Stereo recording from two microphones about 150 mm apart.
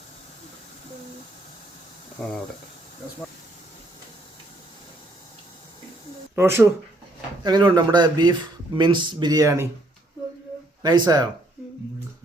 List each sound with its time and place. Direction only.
2.2 s speech: centre (ahead or behind)
6.3 s speech: 15° right (ahead or behind)
7.4 s speech: 30° right (ahead or behind)
10.8 s speech: 25° right (ahead or behind)